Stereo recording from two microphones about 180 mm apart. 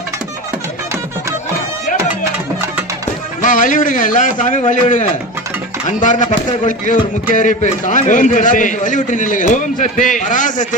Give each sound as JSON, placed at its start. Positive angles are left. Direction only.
{"t": 3.4, "sound": "a man's voice", "side_deg": 45}